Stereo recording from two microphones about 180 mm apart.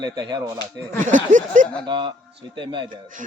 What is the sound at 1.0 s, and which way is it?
Speech, 45° right (ahead or behind).